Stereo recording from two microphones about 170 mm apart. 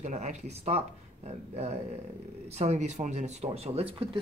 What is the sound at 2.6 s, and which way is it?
Speech, 45° right (ahead or behind).